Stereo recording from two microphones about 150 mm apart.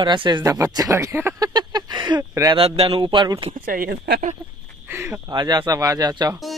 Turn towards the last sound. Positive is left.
turn(degrees=-25)  # may be behind; listen again after turning